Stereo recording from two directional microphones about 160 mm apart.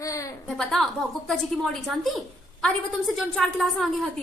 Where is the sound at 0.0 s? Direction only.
20° left (ahead or behind).